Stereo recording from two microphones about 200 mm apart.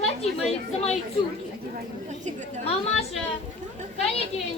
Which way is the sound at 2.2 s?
35° right (ahead or behind).